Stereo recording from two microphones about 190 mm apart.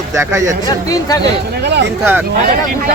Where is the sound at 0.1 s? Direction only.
15° right (ahead or behind).